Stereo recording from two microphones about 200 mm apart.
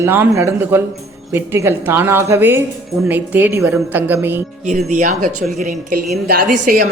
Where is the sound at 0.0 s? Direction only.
10° right (ahead or behind).